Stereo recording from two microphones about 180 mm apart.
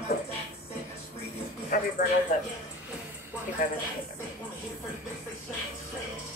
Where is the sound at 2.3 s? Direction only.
45° left (ahead or behind).